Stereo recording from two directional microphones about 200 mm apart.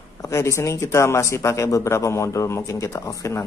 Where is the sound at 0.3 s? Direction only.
15° left (ahead or behind).